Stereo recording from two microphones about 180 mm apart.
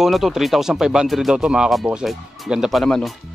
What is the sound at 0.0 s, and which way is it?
Speech, centre (ahead or behind).